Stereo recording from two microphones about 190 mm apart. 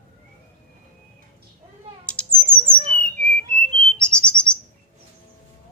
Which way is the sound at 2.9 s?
30° right (ahead or behind).